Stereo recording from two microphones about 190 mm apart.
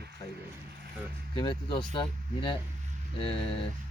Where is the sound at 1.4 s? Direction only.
25° left (ahead or behind).